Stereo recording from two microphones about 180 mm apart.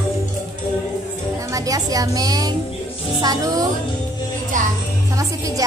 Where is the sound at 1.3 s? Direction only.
20° right (ahead or behind).